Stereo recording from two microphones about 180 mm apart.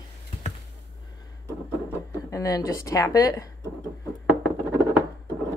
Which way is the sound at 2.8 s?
20° left (ahead or behind).